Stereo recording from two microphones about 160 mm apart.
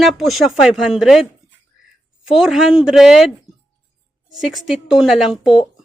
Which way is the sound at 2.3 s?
5° right (ahead or behind).